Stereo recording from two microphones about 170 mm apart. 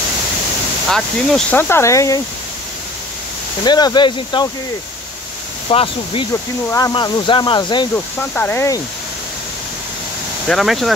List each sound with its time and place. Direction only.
0.8 s speech: centre (ahead or behind)
1.6 s speech: 15° left (ahead or behind)
3.6 s speech: 25° left (ahead or behind)
5.7 s speech: 35° left (ahead or behind)
7.9 s speech: 10° left (ahead or behind)
10.5 s speech: centre (ahead or behind)